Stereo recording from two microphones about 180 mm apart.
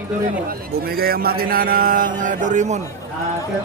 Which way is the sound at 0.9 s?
60° right (ahead or behind).